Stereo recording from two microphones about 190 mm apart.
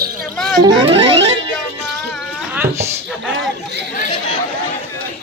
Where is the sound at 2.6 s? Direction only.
15° right (ahead or behind).